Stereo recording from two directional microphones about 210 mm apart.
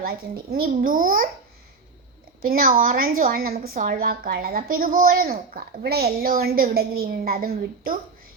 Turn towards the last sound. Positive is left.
turn(degrees=-45)  # may be behind; listen again after turning